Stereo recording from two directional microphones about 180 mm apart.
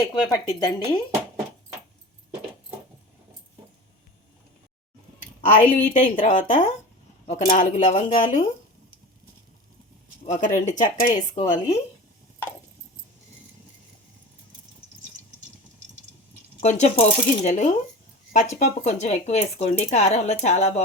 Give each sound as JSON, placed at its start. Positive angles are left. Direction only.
{"t": 0.1, "sound": "speech", "side_deg": 20}
{"t": 5.8, "sound": "speech", "side_deg": 40}
{"t": 10.2, "sound": "speech", "side_deg": 40}
{"t": 16.6, "sound": "speech", "side_deg": 40}